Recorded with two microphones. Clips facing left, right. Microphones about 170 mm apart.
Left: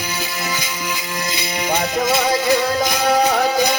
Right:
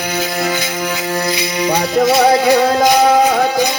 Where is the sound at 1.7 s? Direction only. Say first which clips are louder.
Right 6 dB; 55° right (ahead or behind).